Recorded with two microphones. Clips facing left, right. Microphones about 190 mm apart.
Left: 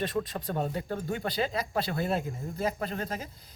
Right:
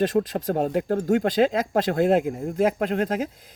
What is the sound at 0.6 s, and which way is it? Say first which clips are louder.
Speech: right 9 dB; 85° right.